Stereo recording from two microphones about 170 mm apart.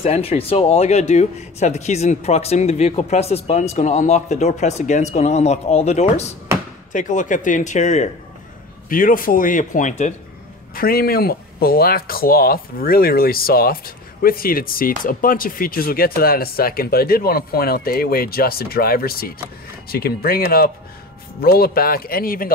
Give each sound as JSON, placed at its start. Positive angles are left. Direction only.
{"t": 0.0, "sound": "speech", "side_deg": 35}
{"t": 8.8, "sound": "speech", "side_deg": 55}
{"t": 10.7, "sound": "speech", "side_deg": 60}